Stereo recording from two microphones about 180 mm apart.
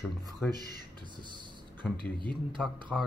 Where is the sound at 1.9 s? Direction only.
25° right (ahead or behind).